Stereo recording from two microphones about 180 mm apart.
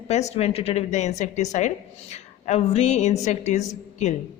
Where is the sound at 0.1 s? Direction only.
40° left (ahead or behind).